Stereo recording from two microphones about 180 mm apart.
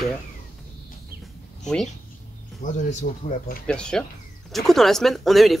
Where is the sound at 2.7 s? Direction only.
45° left (ahead or behind).